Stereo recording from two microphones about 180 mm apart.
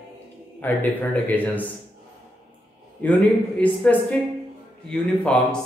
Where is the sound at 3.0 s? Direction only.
10° left (ahead or behind).